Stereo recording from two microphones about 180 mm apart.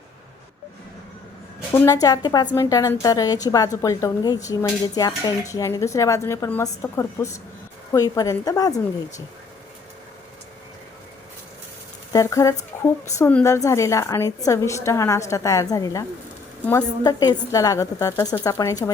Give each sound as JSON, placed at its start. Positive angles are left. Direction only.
{"t": 1.7, "sound": "a woman's voice", "side_deg": 15}
{"t": 12.1, "sound": "a woman's voice", "side_deg": 20}